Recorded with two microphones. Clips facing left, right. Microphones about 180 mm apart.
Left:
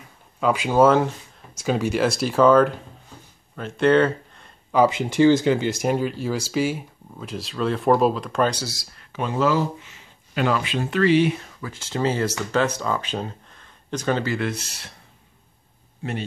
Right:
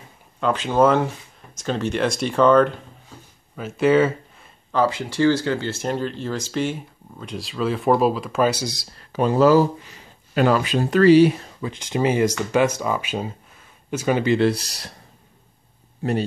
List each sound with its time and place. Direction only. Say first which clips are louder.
0.4 s speech: left 1 dB; 10° left (ahead or behind)
4.7 s speech: left 3 dB; 20° left (ahead or behind); by 8.7 s 10° right (ahead or behind)
8.9 s speech: right 7 dB; 35° right (ahead or behind)
11.6 s speech: right 3 dB; 15° right (ahead or behind)
14.3 s speech: right 8 dB; 35° right (ahead or behind)
16.0 s speech: right 7 dB; 40° right (ahead or behind)